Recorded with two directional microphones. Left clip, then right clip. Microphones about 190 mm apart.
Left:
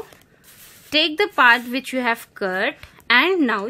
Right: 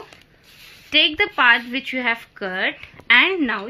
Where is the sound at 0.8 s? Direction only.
45° left (ahead or behind).